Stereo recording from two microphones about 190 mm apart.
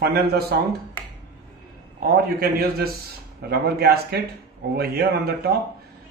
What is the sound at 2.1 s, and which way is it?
A man's voice, 55° right (ahead or behind).